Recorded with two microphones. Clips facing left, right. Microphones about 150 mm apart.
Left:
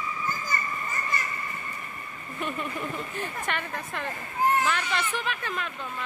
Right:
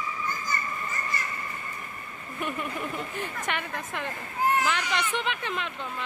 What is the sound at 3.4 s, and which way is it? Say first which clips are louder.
Speech: even; 15° right (ahead or behind).